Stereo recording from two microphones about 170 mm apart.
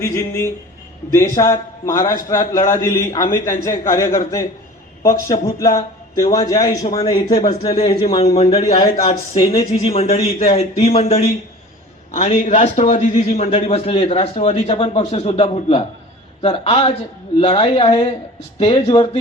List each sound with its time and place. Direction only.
0.0 s a man's voice: 15° left (ahead or behind)
5.3 s a man's voice: 20° left (ahead or behind); by 8.1 s 35° left (ahead or behind)
8.1 s a man's voice: 25° left (ahead or behind)
8.4 s a man's voice: 40° left (ahead or behind)